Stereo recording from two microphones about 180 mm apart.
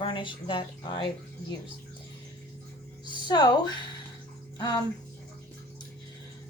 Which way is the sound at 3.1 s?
25° left (ahead or behind).